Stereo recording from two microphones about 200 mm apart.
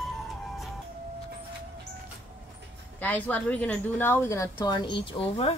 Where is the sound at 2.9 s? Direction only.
10° left (ahead or behind); by 5.5 s 30° left (ahead or behind).